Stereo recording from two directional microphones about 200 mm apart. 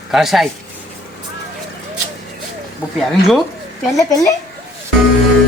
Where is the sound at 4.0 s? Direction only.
15° left (ahead or behind).